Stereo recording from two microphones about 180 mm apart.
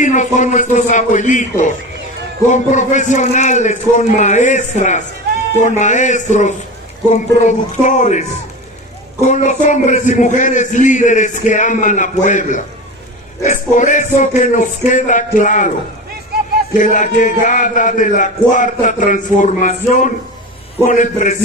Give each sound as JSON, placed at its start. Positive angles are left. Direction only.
{"t": 0.0, "sound": "a man's voice", "side_deg": 45}
{"t": 9.3, "sound": "a man's voice", "side_deg": 40}
{"t": 16.7, "sound": "a man's voice", "side_deg": 45}